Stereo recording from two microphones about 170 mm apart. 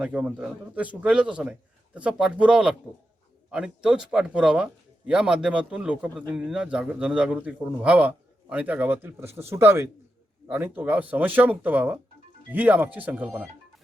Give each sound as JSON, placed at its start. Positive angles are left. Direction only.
{"t": 0.0, "sound": "speech", "side_deg": -10}